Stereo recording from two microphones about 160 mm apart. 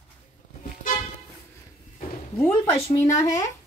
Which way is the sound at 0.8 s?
55° left (ahead or behind).